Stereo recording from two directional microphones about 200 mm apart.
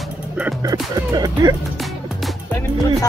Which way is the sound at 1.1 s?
20° right (ahead or behind).